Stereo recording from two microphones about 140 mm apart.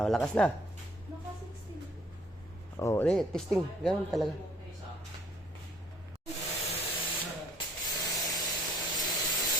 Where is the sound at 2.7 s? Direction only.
20° left (ahead or behind).